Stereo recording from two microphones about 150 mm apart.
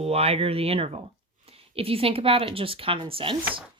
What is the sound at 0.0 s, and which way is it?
A woman's voice, 40° right (ahead or behind).